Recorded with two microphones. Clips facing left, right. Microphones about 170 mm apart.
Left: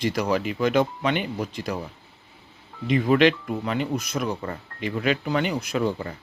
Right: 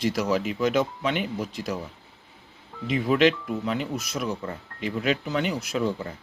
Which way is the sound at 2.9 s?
Centre (ahead or behind).